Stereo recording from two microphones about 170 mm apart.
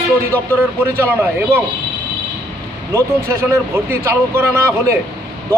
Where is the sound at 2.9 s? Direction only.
15° right (ahead or behind).